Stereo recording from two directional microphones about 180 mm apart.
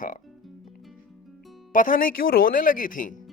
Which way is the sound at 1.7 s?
45° left (ahead or behind).